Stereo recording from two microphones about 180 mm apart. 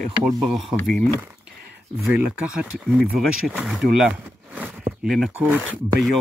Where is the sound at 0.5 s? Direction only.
Centre (ahead or behind).